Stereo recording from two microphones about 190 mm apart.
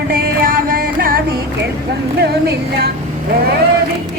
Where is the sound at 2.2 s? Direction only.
55° right (ahead or behind).